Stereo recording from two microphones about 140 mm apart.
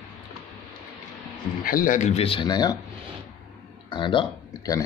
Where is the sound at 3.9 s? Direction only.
35° left (ahead or behind).